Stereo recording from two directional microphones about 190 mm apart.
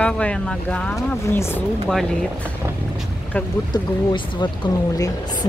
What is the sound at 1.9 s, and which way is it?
Speech, centre (ahead or behind).